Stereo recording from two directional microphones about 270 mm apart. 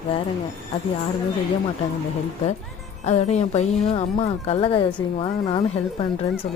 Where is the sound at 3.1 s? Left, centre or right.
Left.